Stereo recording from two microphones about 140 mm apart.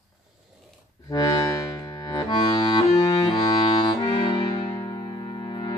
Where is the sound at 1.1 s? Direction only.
25° left (ahead or behind).